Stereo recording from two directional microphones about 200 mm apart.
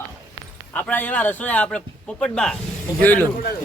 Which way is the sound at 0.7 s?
10° left (ahead or behind).